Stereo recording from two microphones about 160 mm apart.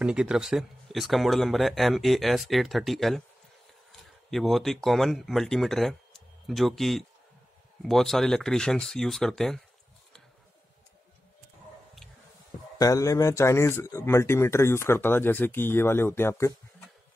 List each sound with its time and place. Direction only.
0.0 s speech: 5° right (ahead or behind)
4.3 s speech: centre (ahead or behind)
12.7 s speech: 20° left (ahead or behind)